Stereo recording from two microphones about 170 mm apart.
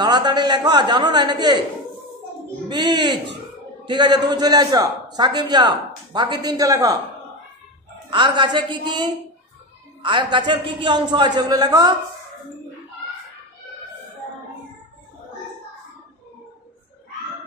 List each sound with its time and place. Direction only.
0.0 s a man's voice: 25° right (ahead or behind)
2.7 s a man's voice: 25° right (ahead or behind)
8.1 s a man's voice: 30° right (ahead or behind)